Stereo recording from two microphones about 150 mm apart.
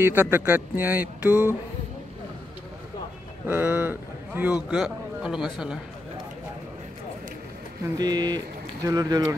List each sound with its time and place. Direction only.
0.0 s speech: 15° right (ahead or behind)
3.4 s a man's voice: 15° right (ahead or behind)
8.0 s a sound: 30° right (ahead or behind)